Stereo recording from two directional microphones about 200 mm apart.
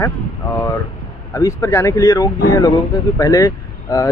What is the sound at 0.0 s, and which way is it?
Speech, 15° left (ahead or behind).